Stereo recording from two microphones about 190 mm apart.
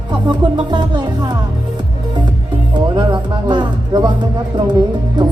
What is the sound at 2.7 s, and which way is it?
Speech, 25° right (ahead or behind).